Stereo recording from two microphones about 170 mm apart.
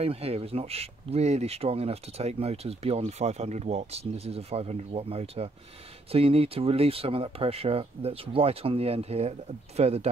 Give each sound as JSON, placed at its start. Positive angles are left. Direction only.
{"t": 0.0, "sound": "speech", "side_deg": -35}